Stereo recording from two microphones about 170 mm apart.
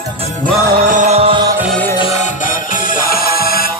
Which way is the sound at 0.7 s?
55° right (ahead or behind).